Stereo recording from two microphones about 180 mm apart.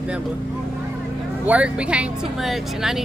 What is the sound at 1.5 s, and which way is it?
A woman's voice, 5° right (ahead or behind).